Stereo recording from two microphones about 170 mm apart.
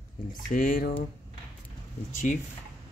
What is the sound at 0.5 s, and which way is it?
Speech, 55° left (ahead or behind).